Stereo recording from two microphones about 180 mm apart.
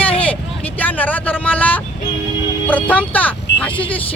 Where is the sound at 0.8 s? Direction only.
10° left (ahead or behind).